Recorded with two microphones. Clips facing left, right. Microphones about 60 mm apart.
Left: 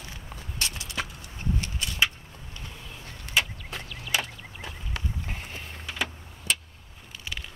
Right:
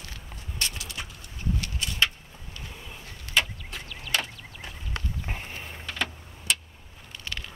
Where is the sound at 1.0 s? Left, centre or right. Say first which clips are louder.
Left 8 dB; left.